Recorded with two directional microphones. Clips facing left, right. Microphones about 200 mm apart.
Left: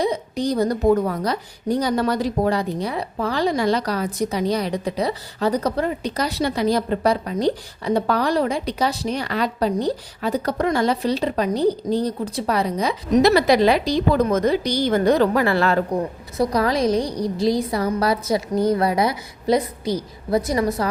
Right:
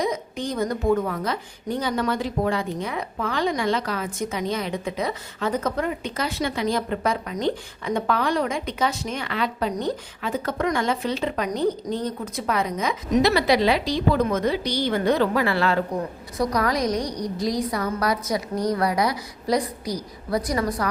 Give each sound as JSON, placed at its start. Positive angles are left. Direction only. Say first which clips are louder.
{"t": 0.0, "sound": "a woman's voice", "louder": "left 4 dB", "side_deg": 35}
{"t": 16.4, "sound": "a woman's voice", "louder": "left 3 dB", "side_deg": 30}